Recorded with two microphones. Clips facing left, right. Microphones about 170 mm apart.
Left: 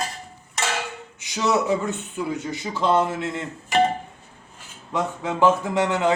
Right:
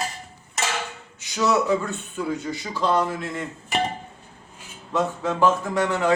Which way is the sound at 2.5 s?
20° left (ahead or behind).